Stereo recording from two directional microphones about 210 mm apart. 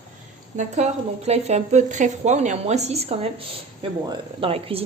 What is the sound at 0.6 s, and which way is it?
A woman's voice, 30° right (ahead or behind).